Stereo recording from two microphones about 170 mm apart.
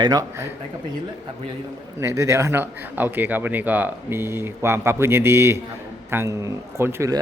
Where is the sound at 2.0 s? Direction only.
15° right (ahead or behind).